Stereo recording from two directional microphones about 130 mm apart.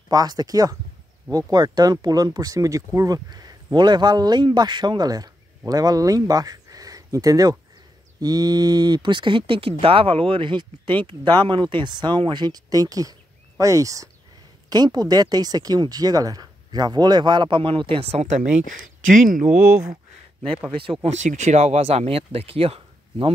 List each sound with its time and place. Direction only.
0.1 s speech: 30° right (ahead or behind)
19.1 s speech: 85° right
21.0 s speech: 65° right (ahead or behind); by 23.3 s 45° right (ahead or behind)